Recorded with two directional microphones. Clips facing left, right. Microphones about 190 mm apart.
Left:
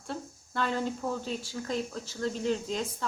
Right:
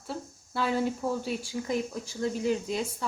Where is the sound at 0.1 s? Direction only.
5° right (ahead or behind).